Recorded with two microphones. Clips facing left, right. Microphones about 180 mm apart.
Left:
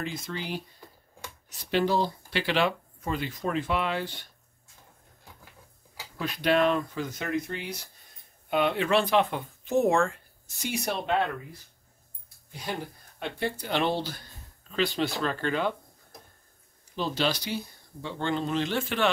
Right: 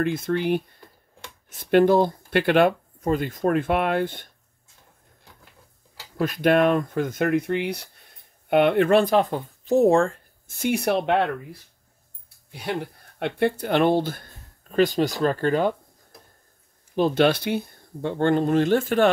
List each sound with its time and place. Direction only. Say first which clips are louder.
0.0 s speech: right 11 dB; 60° right (ahead or behind)
6.1 s speech: right 6 dB; 50° right (ahead or behind)
10.4 s speech: right 9 dB; 55° right (ahead or behind)
12.4 s speech: right 6 dB; 65° right (ahead or behind); by 15.7 s 45° right (ahead or behind)
16.9 s speech: right 9 dB; 55° right (ahead or behind)